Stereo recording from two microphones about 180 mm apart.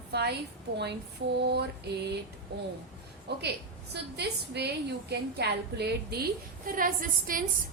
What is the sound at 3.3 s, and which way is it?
A woman's voice, 70° right (ahead or behind).